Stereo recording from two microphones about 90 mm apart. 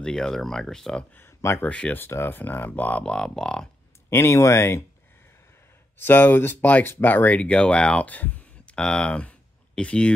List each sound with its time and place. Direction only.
0.0 s speech: 5° left (ahead or behind)
1.1 s speech: 25° left (ahead or behind)
1.7 s speech: 15° left (ahead or behind)
2.0 s speech: 25° left (ahead or behind); by 3.6 s 5° left (ahead or behind)
4.1 s speech: 30° left (ahead or behind)
5.9 s speech: 25° left (ahead or behind)